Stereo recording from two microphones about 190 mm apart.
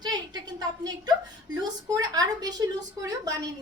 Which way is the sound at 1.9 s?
20° right (ahead or behind).